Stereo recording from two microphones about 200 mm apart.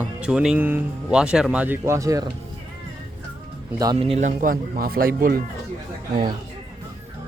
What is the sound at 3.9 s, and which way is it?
Speech, 30° right (ahead or behind).